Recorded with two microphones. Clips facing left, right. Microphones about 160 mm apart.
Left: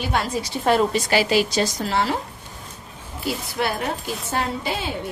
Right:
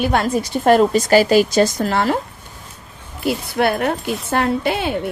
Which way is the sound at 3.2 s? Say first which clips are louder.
Right 7 dB; 60° right (ahead or behind).